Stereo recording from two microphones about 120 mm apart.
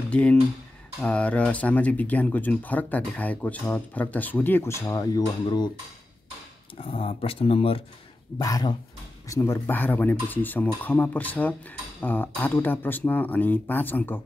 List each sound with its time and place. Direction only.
0.1 s speech: 10° left (ahead or behind); by 5.2 s 25° left (ahead or behind)
5.4 s speech: 35° left (ahead or behind)
6.8 s speech: 50° left (ahead or behind)
8.4 s speech: 30° left (ahead or behind)